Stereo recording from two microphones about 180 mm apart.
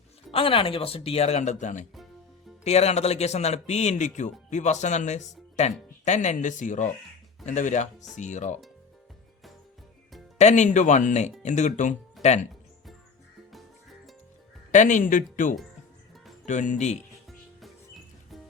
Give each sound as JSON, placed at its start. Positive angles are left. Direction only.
{"t": 0.3, "sound": "speech", "side_deg": 30}
{"t": 10.3, "sound": "speech", "side_deg": 40}
{"t": 14.7, "sound": "speech", "side_deg": 45}